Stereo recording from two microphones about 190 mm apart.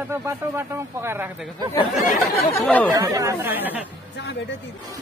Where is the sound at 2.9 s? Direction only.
20° right (ahead or behind).